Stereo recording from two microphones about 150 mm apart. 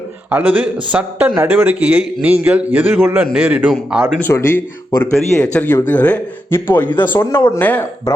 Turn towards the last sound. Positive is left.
turn(degrees=10)  # may be behind; listen again after turning